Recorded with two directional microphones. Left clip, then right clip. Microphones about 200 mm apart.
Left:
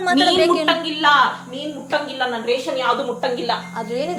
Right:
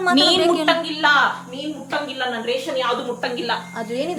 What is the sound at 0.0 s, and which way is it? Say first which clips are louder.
A woman's voice: even; 10° right (ahead or behind).